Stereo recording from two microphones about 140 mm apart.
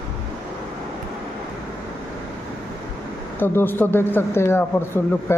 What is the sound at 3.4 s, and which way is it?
Speech, 15° left (ahead or behind).